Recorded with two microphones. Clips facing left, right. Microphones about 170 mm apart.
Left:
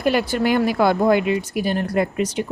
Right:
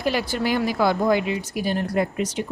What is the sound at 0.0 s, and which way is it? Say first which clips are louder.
Speech: left 4 dB; 55° left (ahead or behind).